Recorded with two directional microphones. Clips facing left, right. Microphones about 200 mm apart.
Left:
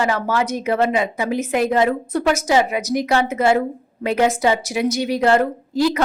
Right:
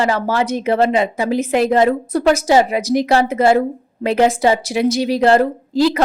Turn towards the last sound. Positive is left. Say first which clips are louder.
# right 3 dB
turn(degrees=-30)  # may be behind; listen again after turning